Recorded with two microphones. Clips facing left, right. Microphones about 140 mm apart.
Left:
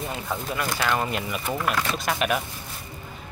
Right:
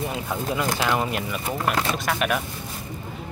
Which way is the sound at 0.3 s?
15° right (ahead or behind).